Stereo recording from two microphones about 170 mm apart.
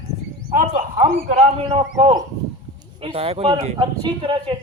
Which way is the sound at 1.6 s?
30° right (ahead or behind).